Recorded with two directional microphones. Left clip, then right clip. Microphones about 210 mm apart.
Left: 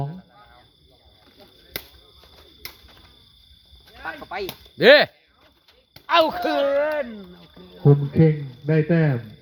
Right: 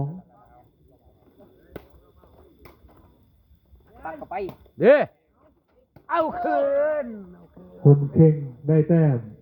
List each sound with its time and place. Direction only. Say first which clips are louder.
4.0 s speech: left 1 dB; 30° right (ahead or behind)
4.8 s speech: left 3 dB; 25° left (ahead or behind)
6.1 s speech: left 4 dB; 60° left (ahead or behind); by 7.1 s 80° left
7.9 s speech: right 1 dB; 15° right (ahead or behind)